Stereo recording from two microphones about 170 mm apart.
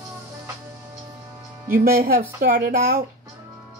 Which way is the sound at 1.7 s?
60° right (ahead or behind).